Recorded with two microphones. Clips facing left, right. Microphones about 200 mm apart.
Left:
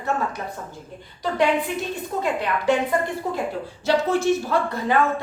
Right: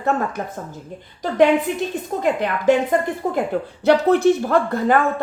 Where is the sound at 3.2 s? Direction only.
55° right (ahead or behind).